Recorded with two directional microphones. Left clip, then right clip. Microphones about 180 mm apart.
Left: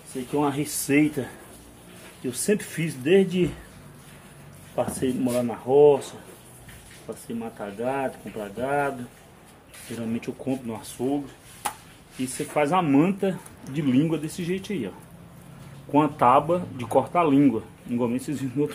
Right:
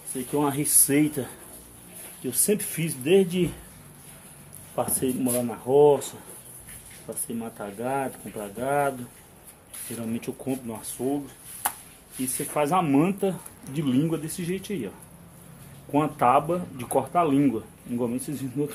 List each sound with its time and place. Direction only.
0.1 s speech: 45° right (ahead or behind)
0.6 s speech: 25° right (ahead or behind)
1.0 s speech: 10° right (ahead or behind)
4.7 s speech: 20° right (ahead or behind); by 6.1 s 35° right (ahead or behind)
7.1 s speech: 45° right (ahead or behind)
9.8 s speech: 20° right (ahead or behind)
12.2 s speech: 15° right (ahead or behind)
15.9 s speech: 10° right (ahead or behind)